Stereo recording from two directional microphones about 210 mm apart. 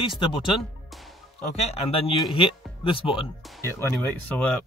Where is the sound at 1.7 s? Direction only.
25° left (ahead or behind).